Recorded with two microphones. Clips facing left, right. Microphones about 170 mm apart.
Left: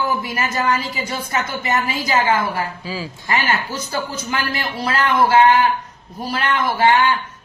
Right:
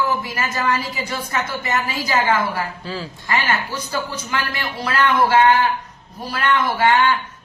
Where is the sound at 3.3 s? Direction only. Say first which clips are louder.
Left 1 dB; 30° left (ahead or behind).